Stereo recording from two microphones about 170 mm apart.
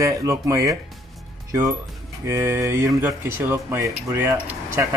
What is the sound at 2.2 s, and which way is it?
Speech, 15° right (ahead or behind).